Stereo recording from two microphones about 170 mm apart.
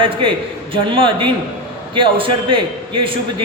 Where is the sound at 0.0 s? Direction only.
30° right (ahead or behind).